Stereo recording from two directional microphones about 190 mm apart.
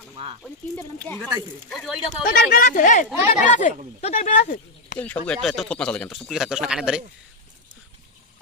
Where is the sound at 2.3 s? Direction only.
50° left (ahead or behind).